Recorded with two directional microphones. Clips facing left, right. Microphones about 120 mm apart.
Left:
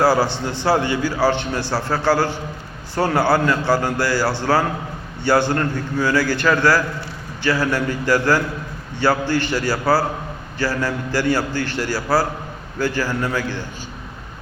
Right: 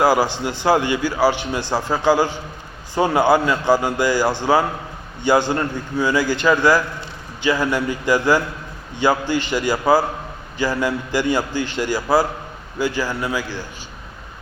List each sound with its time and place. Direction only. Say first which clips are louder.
0.0 s a man's voice: even; 15° right (ahead or behind)